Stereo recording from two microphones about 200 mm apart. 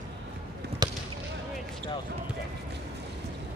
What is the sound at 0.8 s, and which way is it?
Basketball bounce, 20° right (ahead or behind).